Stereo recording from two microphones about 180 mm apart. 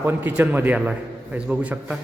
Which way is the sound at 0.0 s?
10° right (ahead or behind).